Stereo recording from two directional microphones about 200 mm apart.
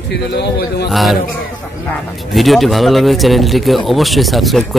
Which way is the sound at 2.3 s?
Centre (ahead or behind).